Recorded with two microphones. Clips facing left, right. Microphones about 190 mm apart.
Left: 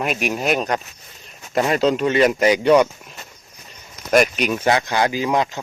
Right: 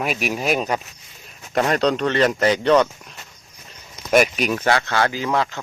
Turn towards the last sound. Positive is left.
turn(degrees=20)  # may be behind; listen again after turning